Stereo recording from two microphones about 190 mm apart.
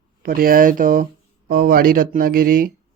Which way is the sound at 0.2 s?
50° right (ahead or behind).